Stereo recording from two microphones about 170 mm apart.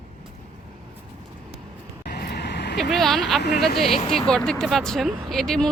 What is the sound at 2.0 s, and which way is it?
Vehicle, 70° left (ahead or behind).